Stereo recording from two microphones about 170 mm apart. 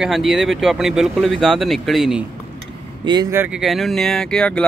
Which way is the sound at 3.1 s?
25° right (ahead or behind).